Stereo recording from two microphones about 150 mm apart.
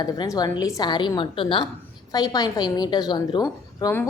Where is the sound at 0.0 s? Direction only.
25° left (ahead or behind).